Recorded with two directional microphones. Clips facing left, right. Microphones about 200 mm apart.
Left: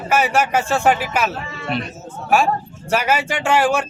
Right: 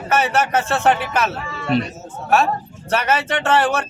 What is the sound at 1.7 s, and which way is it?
Speech, 40° right (ahead or behind).